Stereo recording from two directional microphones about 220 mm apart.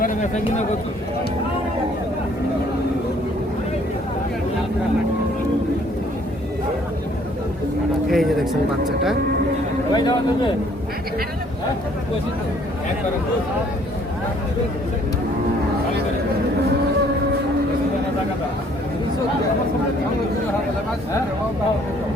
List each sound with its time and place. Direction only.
0.0 s speech: 35° left (ahead or behind)
8.1 s speech: centre (ahead or behind)
9.9 s a man's voice: 20° left (ahead or behind)